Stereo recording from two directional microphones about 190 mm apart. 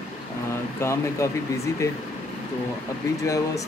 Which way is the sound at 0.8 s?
15° left (ahead or behind).